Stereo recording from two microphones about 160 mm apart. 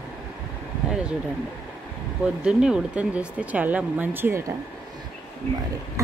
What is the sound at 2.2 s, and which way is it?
Speech, 5° right (ahead or behind).